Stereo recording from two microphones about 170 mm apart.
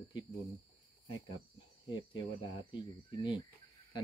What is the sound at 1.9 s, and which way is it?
Speech, 30° left (ahead or behind).